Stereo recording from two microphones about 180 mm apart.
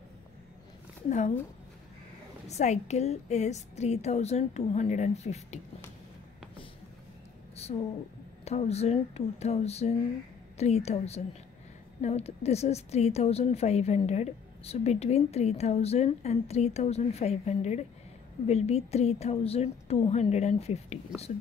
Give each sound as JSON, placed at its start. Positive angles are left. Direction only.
{"t": 2.4, "sound": "a woman's voice", "side_deg": 40}
{"t": 7.5, "sound": "a sound", "side_deg": 35}
{"t": 8.5, "sound": "a woman's voice", "side_deg": 35}